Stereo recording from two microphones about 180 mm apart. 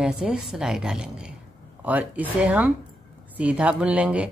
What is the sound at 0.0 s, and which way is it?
A woman's voice, 5° right (ahead or behind).